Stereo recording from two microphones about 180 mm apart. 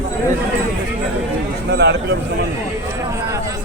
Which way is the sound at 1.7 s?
70° right (ahead or behind).